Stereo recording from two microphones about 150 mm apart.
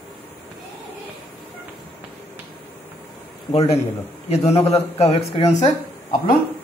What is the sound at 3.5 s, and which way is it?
A man's voice, 40° left (ahead or behind).